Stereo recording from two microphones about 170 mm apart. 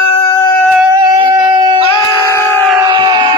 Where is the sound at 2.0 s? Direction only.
15° left (ahead or behind).